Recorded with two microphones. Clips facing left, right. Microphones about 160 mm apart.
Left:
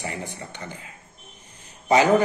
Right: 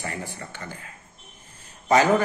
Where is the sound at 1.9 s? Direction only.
15° left (ahead or behind).